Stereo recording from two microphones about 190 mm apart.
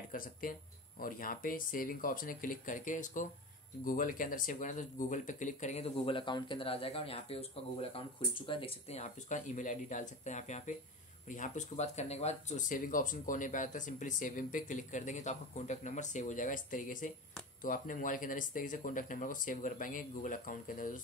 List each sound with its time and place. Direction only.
0.1 s speech: 45° left (ahead or behind)